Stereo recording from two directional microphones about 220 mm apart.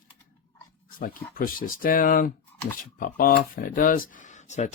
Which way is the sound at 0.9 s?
40° left (ahead or behind).